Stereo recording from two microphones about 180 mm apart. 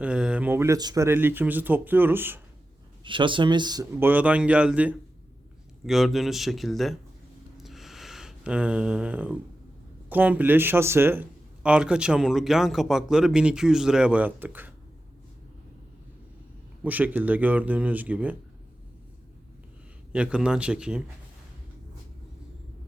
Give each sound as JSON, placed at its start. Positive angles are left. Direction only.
{"t": 0.0, "sound": "speech", "side_deg": -5}
{"t": 3.0, "sound": "speech", "side_deg": -25}
{"t": 4.0, "sound": "speech", "side_deg": -10}
{"t": 7.6, "sound": "a sound", "side_deg": 0}
{"t": 10.1, "sound": "speech", "side_deg": -10}
{"t": 16.8, "sound": "speech", "side_deg": -10}
{"t": 20.1, "sound": "speech", "side_deg": -5}